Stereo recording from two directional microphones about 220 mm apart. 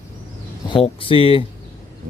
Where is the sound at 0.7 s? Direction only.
25° left (ahead or behind).